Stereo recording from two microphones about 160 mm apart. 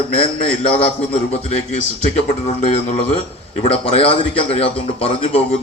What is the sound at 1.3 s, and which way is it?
A man's voice, 40° left (ahead or behind).